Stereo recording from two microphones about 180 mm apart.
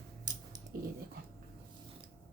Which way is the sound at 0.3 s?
20° right (ahead or behind).